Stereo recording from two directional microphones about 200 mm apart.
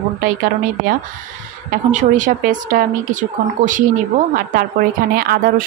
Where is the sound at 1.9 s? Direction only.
40° right (ahead or behind).